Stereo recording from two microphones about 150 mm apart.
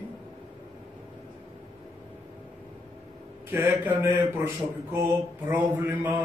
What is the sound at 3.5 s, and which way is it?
Mantra, 15° right (ahead or behind).